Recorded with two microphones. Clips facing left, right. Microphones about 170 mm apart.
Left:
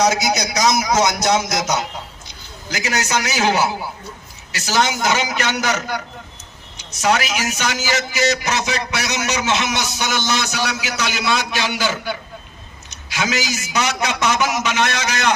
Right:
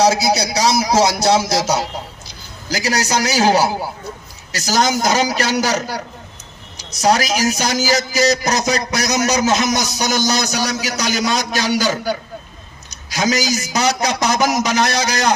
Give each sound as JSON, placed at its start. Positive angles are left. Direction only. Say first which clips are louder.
{"t": 0.0, "sound": "a man's voice", "louder": "right 3 dB", "side_deg": -30}